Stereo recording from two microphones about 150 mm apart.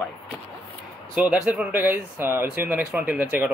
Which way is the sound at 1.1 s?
10° right (ahead or behind).